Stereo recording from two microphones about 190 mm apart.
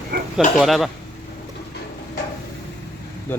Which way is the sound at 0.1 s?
45° right (ahead or behind).